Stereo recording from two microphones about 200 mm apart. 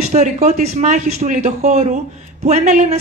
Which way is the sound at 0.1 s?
35° right (ahead or behind).